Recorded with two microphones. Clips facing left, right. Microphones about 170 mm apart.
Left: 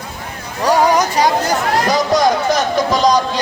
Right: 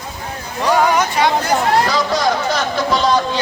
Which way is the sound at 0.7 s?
40° left (ahead or behind).